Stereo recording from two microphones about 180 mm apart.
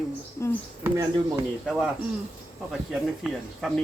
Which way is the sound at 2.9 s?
5° right (ahead or behind).